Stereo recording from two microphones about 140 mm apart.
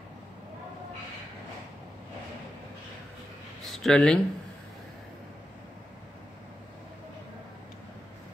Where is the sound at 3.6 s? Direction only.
Centre (ahead or behind).